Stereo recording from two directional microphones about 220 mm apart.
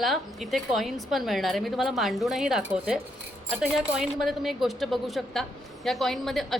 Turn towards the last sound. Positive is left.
turn(degrees=0)  # may be behind; listen again after turning